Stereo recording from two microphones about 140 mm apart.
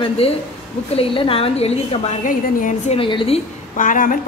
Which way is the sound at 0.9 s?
40° left (ahead or behind).